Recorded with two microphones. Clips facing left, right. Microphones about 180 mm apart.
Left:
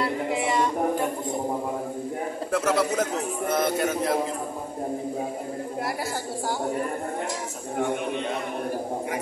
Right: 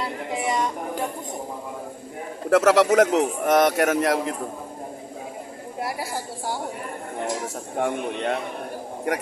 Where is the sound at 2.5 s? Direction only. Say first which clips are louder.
Right 8 dB; 85° right.